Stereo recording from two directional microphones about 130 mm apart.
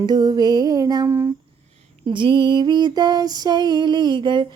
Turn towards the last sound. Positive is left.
turn(degrees=-35)  # may be behind; listen again after turning